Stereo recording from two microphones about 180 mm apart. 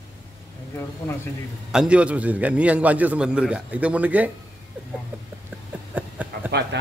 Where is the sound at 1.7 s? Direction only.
5° right (ahead or behind).